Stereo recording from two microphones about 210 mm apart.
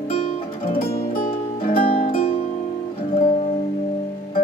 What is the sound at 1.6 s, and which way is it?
Music, 30° left (ahead or behind).